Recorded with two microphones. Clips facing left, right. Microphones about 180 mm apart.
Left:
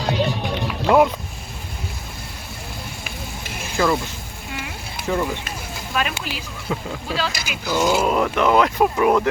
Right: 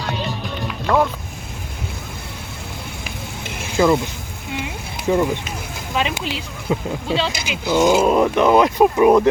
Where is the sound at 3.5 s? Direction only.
20° right (ahead or behind).